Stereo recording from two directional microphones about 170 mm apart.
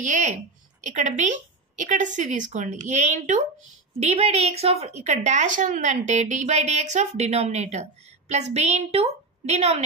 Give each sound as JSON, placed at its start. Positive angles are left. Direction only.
{"t": 0.0, "sound": "a woman's voice", "side_deg": -45}